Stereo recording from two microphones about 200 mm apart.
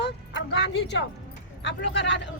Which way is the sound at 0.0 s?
65° left (ahead or behind).